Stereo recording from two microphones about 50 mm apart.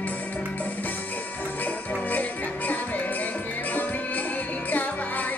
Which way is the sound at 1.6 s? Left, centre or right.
Left.